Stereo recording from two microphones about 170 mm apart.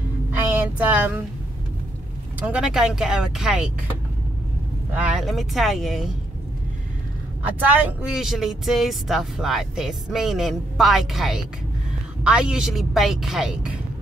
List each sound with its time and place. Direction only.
0.5 s speech: 10° right (ahead or behind)
2.4 s speech: 5° right (ahead or behind)
4.9 s speech: 5° right (ahead or behind)
7.6 s speech: 5° right (ahead or behind)